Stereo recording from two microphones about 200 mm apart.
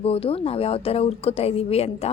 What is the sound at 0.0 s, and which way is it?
A woman's voice, 30° left (ahead or behind).